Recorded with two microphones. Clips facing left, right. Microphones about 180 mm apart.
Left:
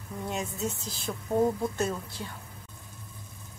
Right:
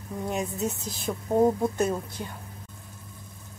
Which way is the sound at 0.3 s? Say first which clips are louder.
Right 3 dB; 20° right (ahead or behind).